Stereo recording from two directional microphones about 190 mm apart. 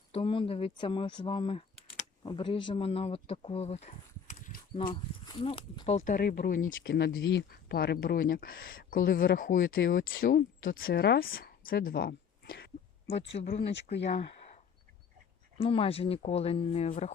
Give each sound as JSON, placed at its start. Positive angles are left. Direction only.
{"t": 0.1, "sound": "speech", "side_deg": 30}
{"t": 5.2, "sound": "speech", "side_deg": 30}
{"t": 6.1, "sound": "speech", "side_deg": 50}
{"t": 13.4, "sound": "speech", "side_deg": 30}
{"t": 15.5, "sound": "speech", "side_deg": 30}